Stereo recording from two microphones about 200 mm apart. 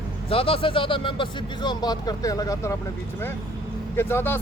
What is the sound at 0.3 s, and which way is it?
Speech, 30° left (ahead or behind).